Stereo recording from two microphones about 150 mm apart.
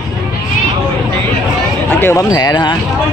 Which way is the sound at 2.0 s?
20° left (ahead or behind).